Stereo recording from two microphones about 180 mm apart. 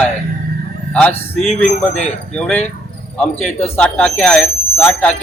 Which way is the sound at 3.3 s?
35° left (ahead or behind).